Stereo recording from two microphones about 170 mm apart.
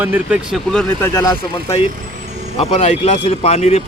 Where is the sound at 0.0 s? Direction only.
10° right (ahead or behind).